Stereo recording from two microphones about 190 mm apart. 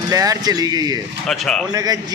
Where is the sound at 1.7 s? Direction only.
20° right (ahead or behind).